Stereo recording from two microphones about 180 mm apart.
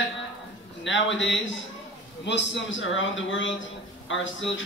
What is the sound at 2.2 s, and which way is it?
A man's voice, 80° left.